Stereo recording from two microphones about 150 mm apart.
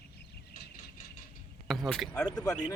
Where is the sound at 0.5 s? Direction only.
70° left (ahead or behind).